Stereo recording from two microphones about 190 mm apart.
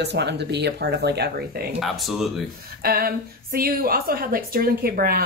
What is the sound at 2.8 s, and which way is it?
A woman's voice, 50° right (ahead or behind).